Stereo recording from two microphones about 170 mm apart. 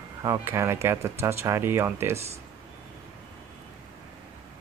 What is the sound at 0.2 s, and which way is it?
Speech, 15° right (ahead or behind).